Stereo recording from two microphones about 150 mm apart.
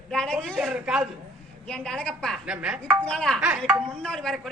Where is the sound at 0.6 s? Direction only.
5° right (ahead or behind).